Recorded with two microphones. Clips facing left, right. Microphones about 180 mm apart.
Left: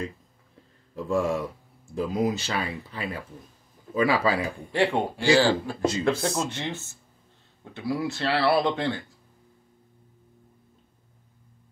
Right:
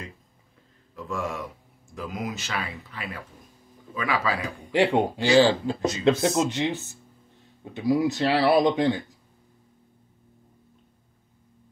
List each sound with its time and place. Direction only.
0.9 s speech: 30° left (ahead or behind)
4.7 s speech: 20° right (ahead or behind)